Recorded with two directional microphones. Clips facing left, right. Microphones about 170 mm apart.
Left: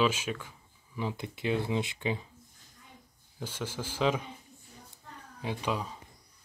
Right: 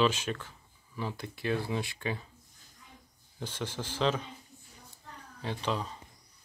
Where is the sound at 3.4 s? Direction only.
10° left (ahead or behind).